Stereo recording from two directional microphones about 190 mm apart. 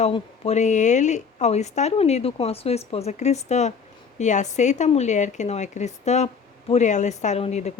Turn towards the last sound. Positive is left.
turn(degrees=35)  # may be behind; listen again after turning